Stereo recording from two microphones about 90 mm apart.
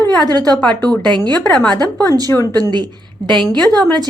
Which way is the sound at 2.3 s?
25° left (ahead or behind).